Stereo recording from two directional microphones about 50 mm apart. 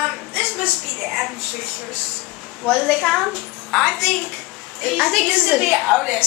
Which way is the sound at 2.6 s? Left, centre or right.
Centre.